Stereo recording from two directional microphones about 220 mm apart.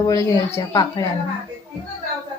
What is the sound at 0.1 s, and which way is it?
Speech, 15° left (ahead or behind).